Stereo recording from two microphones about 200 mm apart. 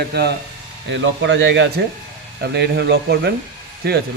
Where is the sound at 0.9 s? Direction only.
65° right (ahead or behind).